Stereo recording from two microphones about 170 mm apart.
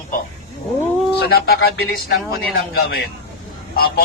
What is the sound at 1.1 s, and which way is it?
Speech, 65° left (ahead or behind).